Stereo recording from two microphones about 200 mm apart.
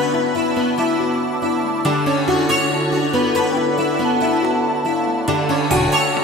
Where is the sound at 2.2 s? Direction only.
Centre (ahead or behind).